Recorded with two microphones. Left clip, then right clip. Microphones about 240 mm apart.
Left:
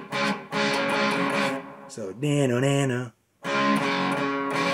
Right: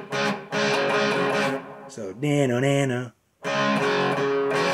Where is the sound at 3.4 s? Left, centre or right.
Right.